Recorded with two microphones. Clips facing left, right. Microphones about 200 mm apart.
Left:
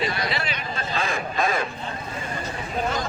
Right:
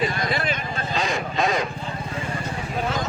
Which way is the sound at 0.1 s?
50° right (ahead or behind).